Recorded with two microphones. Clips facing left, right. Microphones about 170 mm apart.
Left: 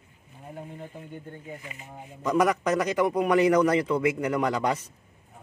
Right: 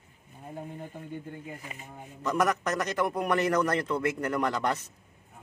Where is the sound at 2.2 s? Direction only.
10° left (ahead or behind).